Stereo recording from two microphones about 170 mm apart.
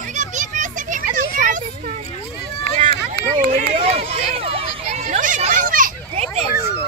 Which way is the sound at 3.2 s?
35° left (ahead or behind).